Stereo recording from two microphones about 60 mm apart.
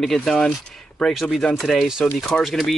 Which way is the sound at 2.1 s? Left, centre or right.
Centre.